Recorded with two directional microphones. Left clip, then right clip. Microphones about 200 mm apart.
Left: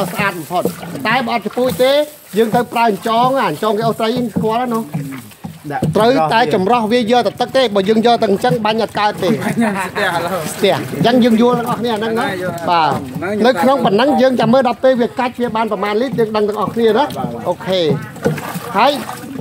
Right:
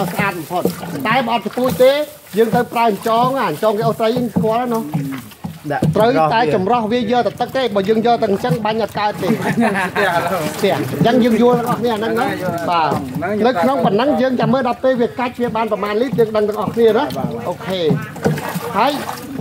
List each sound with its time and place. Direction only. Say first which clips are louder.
0.2 s speech: left 2 dB; 40° left (ahead or behind); by 4.6 s 60° left (ahead or behind)
6.2 s speech: left 1 dB; 60° left (ahead or behind)
9.6 s speech: right 2 dB; 40° left (ahead or behind)
10.6 s speech: left 3 dB; 60° left (ahead or behind)
12.6 s speech: left 3 dB; 60° left (ahead or behind)